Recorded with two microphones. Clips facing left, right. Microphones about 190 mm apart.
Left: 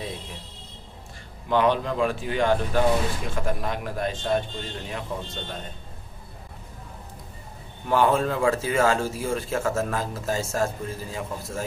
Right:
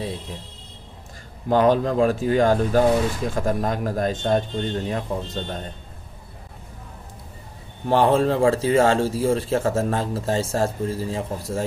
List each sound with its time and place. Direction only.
1.5 s speech: 40° right (ahead or behind)
7.8 s speech: 30° right (ahead or behind)